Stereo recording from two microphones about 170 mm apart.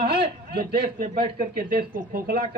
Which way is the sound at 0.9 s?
50° right (ahead or behind).